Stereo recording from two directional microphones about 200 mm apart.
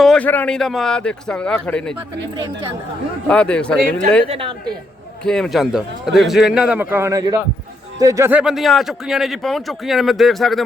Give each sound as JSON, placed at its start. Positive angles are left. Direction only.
{"t": 0.0, "sound": "speech", "side_deg": 5}
{"t": 2.3, "sound": "speech", "side_deg": -20}
{"t": 3.2, "sound": "speech", "side_deg": 5}
{"t": 4.3, "sound": "speech", "side_deg": -25}
{"t": 5.2, "sound": "speech", "side_deg": 0}